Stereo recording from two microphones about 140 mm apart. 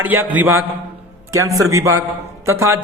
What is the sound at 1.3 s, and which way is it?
Speech, 25° right (ahead or behind).